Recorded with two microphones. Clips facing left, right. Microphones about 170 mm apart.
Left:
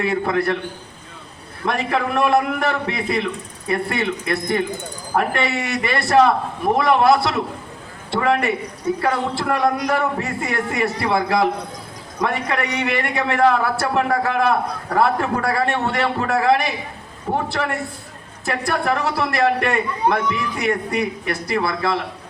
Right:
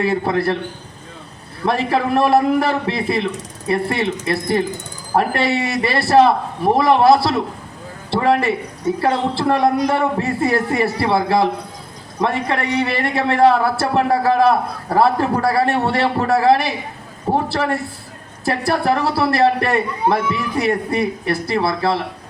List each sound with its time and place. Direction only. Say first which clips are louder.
0.0 s a man's voice: right 2 dB; 30° right (ahead or behind)
1.6 s a man's voice: right 3 dB; 35° right (ahead or behind)